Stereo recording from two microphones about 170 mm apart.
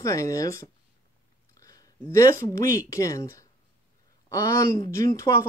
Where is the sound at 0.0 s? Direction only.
20° left (ahead or behind).